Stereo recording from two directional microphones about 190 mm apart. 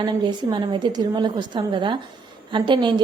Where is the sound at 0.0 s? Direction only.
25° right (ahead or behind).